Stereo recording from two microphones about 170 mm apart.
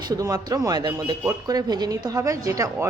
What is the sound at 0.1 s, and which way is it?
Speech, 20° right (ahead or behind).